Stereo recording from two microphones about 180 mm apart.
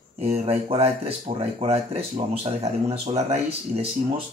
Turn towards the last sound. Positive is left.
turn(degrees=-35)  # may be behind; listen again after turning